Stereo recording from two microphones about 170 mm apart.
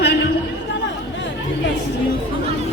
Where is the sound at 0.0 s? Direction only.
85° left.